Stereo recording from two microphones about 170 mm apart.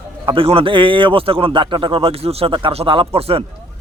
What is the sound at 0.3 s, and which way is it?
A man's voice, 35° right (ahead or behind).